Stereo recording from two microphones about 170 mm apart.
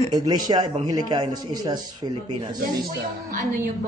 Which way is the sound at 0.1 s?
25° right (ahead or behind).